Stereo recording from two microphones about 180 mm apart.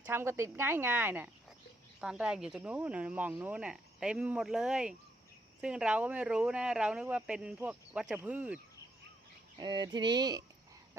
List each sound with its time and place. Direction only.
0.0 s speech: 15° right (ahead or behind)
9.6 s speech: 25° right (ahead or behind)